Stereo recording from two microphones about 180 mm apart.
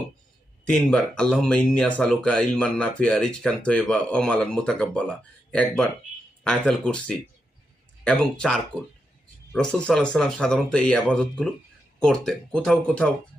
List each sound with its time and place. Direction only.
0.6 s speech: 5° left (ahead or behind)